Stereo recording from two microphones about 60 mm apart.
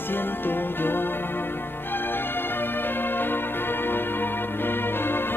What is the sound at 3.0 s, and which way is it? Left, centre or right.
Music, left.